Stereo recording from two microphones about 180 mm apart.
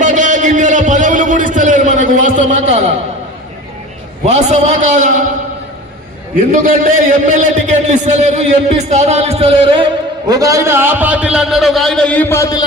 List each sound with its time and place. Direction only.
0.0 s a sound: 45° right (ahead or behind)
4.3 s a man's voice: 40° right (ahead or behind)
6.5 s a man's voice: 50° right (ahead or behind); by 12.6 s 20° left (ahead or behind)